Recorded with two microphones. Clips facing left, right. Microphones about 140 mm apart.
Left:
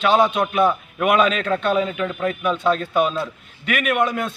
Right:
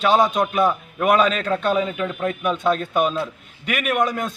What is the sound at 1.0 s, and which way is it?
Speech, 35° right (ahead or behind).